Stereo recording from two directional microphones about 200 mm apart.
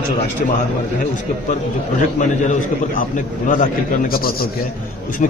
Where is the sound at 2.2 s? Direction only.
40° left (ahead or behind).